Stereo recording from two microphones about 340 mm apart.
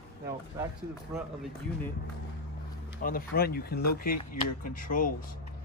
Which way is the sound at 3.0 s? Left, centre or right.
Left.